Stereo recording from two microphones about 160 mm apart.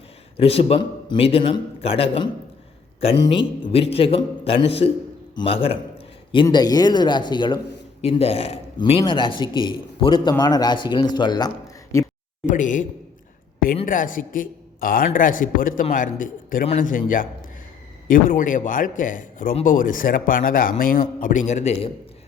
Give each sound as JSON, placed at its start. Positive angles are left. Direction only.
{"t": 0.3, "sound": "a man's voice", "side_deg": 40}
{"t": 8.0, "sound": "a man's voice", "side_deg": 40}
{"t": 8.8, "sound": "a man's voice", "side_deg": 30}
{"t": 12.5, "sound": "a man's voice", "side_deg": 55}
{"t": 13.8, "sound": "a man's voice", "side_deg": 55}